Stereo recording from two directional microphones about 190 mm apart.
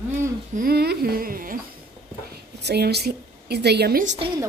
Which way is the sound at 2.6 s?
60° right (ahead or behind).